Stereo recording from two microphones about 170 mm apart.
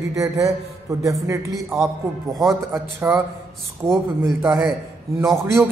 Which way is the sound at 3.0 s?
10° right (ahead or behind).